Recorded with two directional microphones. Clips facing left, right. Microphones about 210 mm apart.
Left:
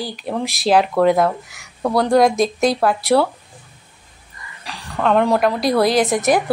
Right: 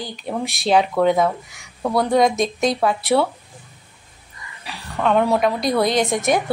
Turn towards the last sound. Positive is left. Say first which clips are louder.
# left 3 dB
turn(degrees=0)  # may be behind; listen again after turning